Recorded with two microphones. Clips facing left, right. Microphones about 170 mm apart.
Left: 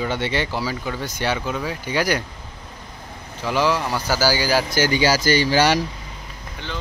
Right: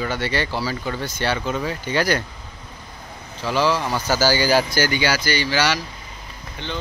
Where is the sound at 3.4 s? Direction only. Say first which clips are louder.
Even; 15° left (ahead or behind).